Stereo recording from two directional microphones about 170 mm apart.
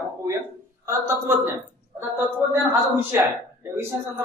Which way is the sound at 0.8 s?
15° right (ahead or behind).